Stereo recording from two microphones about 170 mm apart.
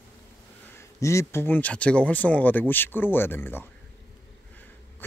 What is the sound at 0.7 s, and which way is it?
Speech, 15° left (ahead or behind).